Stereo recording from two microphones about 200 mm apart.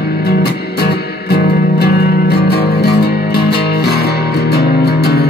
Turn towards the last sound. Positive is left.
turn(degrees=50)  # may be behind; listen again after turning